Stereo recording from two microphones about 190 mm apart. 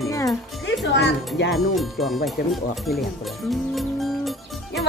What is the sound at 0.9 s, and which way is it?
Speech, 65° left (ahead or behind).